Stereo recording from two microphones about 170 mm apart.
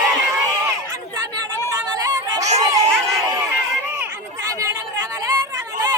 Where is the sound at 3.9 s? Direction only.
20° right (ahead or behind).